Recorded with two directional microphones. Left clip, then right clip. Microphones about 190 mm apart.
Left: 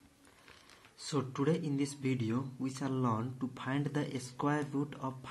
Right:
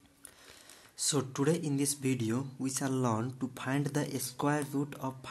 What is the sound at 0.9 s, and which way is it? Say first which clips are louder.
Speech: right 4 dB; 30° right (ahead or behind).